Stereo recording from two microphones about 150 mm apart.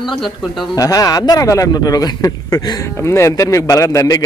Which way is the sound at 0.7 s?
25° left (ahead or behind).